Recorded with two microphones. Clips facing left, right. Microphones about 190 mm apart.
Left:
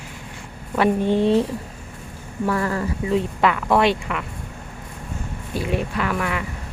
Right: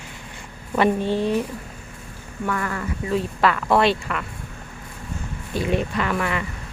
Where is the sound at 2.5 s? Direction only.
35° left (ahead or behind).